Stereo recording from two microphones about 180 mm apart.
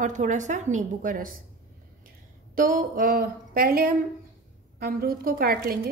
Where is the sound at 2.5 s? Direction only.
50° right (ahead or behind).